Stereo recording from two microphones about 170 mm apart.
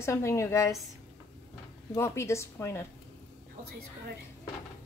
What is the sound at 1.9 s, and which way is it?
Speech, 15° left (ahead or behind).